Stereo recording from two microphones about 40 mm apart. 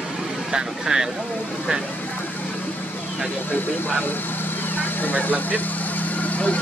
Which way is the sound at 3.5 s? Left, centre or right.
Left.